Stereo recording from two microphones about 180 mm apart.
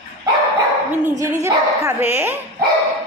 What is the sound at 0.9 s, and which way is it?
A woman's voice, 15° right (ahead or behind).